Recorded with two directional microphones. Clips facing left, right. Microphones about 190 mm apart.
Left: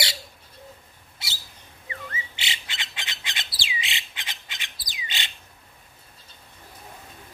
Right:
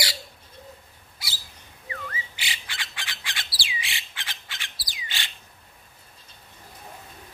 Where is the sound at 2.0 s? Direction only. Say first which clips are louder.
Even; 25° left (ahead or behind).